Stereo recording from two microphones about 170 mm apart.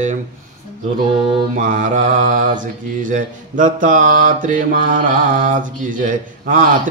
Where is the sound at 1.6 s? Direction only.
50° right (ahead or behind).